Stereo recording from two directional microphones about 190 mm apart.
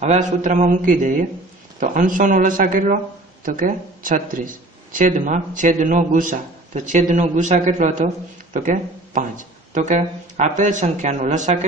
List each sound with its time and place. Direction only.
0.0 s speech: 40° right (ahead or behind)